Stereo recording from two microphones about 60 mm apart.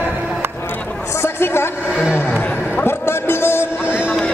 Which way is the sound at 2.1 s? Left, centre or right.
Left.